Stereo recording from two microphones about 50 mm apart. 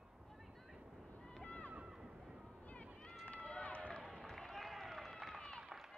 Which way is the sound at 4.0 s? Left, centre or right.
Centre.